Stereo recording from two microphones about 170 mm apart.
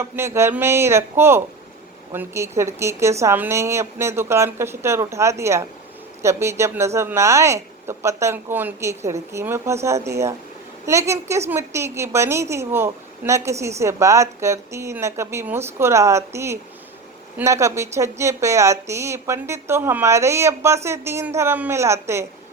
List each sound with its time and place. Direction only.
0.0 s a woman's voice: 15° right (ahead or behind)